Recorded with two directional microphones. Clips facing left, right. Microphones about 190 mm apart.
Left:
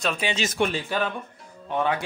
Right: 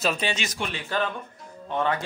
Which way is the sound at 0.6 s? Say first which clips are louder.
Left 8 dB; 40° left (ahead or behind).